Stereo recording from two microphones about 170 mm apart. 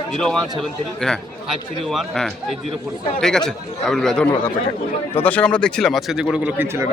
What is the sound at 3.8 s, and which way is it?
A man's voice, 5° left (ahead or behind).